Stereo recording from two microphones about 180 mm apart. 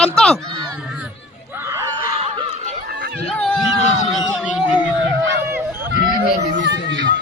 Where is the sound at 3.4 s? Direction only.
5° left (ahead or behind).